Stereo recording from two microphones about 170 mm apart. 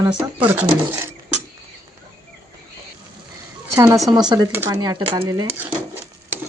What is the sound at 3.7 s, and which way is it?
Speech, 20° right (ahead or behind).